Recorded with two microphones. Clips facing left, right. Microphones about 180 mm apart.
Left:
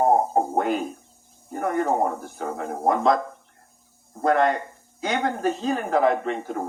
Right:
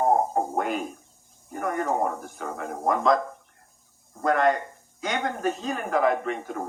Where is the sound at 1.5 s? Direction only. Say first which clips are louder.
Left 4 dB; 30° left (ahead or behind).